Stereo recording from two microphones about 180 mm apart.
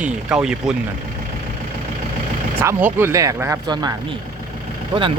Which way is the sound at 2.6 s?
10° right (ahead or behind).